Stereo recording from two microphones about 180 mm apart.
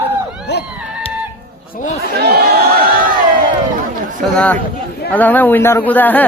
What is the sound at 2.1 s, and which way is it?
Speech, 60° right (ahead or behind).